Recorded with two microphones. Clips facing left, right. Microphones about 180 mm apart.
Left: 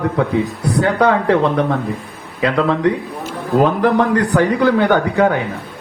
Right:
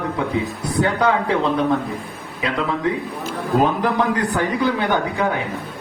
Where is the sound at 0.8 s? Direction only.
65° left (ahead or behind).